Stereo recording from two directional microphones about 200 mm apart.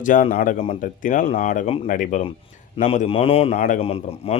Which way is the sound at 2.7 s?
30° left (ahead or behind).